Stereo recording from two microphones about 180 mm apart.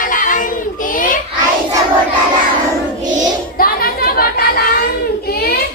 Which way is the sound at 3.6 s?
55° left (ahead or behind).